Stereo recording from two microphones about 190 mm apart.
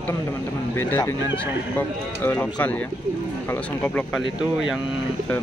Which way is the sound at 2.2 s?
10° left (ahead or behind).